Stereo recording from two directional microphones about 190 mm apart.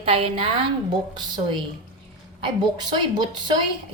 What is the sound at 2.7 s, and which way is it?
Speech, 25° right (ahead or behind).